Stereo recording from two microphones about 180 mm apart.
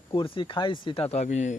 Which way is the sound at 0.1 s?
25° left (ahead or behind).